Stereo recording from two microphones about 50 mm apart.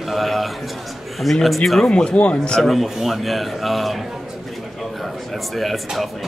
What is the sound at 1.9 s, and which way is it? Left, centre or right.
Speech, left.